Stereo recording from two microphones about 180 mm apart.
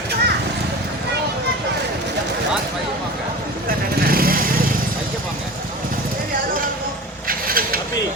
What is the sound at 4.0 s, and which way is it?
Vehicle, 55° right (ahead or behind).